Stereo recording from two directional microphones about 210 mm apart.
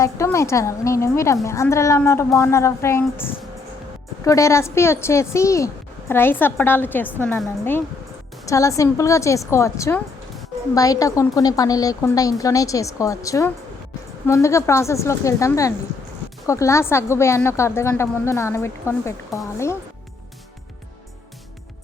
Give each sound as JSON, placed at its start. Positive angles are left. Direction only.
{"t": 0.0, "sound": "a woman's voice", "side_deg": 15}